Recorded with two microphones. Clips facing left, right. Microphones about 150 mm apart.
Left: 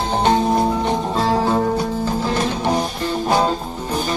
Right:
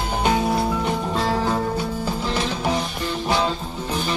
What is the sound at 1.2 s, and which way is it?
Music, 40° left (ahead or behind).